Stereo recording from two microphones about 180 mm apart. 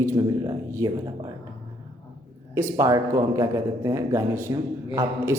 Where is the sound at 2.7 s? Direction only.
15° right (ahead or behind).